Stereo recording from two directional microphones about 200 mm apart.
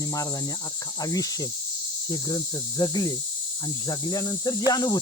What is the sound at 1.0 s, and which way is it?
Cricket, 15° left (ahead or behind).